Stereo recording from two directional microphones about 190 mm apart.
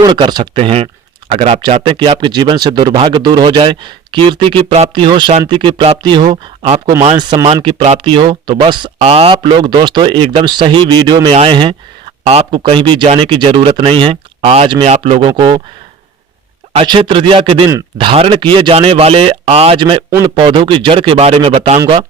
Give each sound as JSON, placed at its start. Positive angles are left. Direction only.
{"t": 0.0, "sound": "speech", "side_deg": -20}
{"t": 16.7, "sound": "speech", "side_deg": -25}
{"t": 20.1, "sound": "a man's voice", "side_deg": -15}
{"t": 20.3, "sound": "speech", "side_deg": -25}